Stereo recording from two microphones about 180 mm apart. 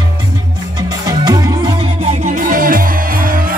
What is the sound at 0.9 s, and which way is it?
Music, 20° right (ahead or behind).